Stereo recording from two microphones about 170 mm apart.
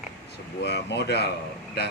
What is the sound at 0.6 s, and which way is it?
Speech, 90° left.